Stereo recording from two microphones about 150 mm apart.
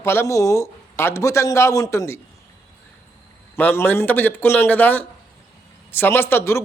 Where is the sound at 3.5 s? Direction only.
15° left (ahead or behind).